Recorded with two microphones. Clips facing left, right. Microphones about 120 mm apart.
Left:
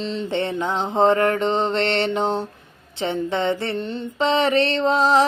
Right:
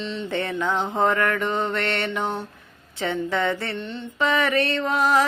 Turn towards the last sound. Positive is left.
turn(degrees=25)  # may be behind; listen again after turning